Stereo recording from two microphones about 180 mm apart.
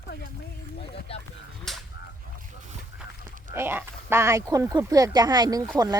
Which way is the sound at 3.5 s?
10° right (ahead or behind).